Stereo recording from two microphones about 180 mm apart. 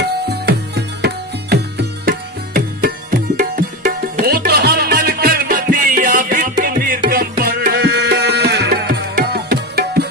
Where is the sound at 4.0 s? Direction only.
60° right (ahead or behind).